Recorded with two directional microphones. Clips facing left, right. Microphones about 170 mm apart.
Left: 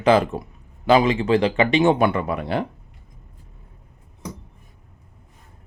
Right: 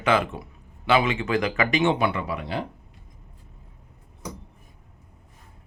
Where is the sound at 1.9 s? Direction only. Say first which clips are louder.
Left 5 dB; 50° left (ahead or behind).